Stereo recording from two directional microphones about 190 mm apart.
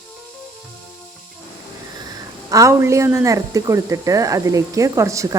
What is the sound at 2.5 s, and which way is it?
A woman's voice, 15° right (ahead or behind).